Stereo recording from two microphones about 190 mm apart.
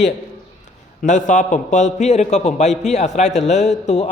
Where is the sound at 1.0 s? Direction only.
40° left (ahead or behind).